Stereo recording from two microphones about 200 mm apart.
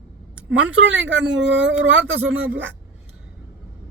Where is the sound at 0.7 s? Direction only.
65° right (ahead or behind).